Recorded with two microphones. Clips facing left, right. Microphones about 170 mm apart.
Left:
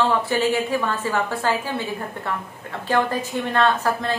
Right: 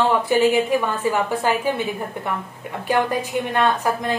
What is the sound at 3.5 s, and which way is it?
Speech, 15° right (ahead or behind).